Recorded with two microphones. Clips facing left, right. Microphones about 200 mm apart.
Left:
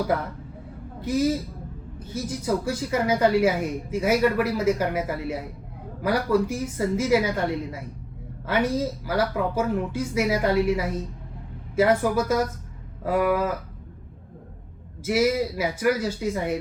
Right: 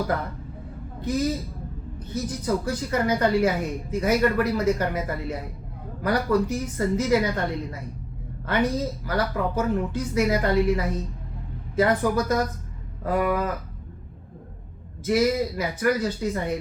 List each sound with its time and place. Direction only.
1.0 s speech: 10° left (ahead or behind)
15.0 s speech: 5° left (ahead or behind)